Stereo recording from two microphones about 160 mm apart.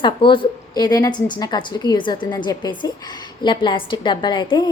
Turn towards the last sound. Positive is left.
turn(degrees=30)  # may be behind; listen again after turning